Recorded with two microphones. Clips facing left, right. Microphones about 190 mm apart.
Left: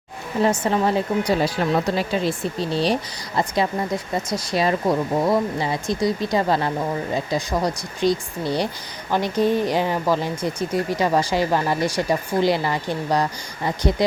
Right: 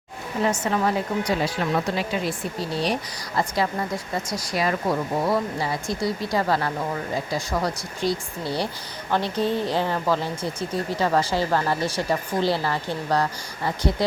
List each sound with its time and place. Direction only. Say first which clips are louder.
0.4 s a woman's voice: left 3 dB; 35° left (ahead or behind); by 13.2 s 15° left (ahead or behind)